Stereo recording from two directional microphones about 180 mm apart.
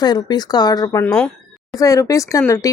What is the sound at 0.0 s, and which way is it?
Speech, 25° left (ahead or behind).